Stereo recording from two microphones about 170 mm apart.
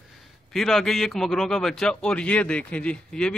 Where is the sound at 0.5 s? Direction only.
Centre (ahead or behind).